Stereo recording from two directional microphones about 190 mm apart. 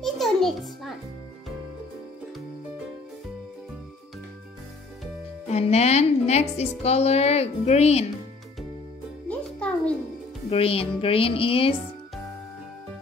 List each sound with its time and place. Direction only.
0.0 s music: centre (ahead or behind)
5.5 s speech: 35° left (ahead or behind)
9.3 s music: 5° left (ahead or behind)
10.5 s music: 30° left (ahead or behind)